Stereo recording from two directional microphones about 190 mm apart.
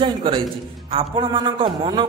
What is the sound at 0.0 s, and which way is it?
A man's voice, 25° right (ahead or behind).